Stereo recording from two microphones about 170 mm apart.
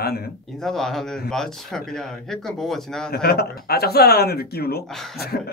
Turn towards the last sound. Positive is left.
turn(degrees=0)  # may be behind; listen again after turning